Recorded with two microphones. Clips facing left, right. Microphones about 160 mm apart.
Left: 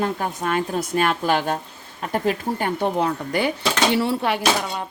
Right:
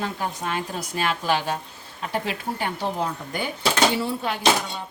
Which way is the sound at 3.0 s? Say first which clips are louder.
Left 6 dB; 75° left (ahead or behind).